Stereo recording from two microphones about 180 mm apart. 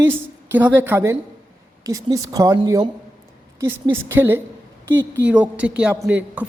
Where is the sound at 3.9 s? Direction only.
10° right (ahead or behind).